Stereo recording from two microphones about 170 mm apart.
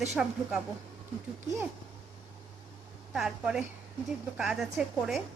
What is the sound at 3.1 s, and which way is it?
A woman's voice, 5° right (ahead or behind).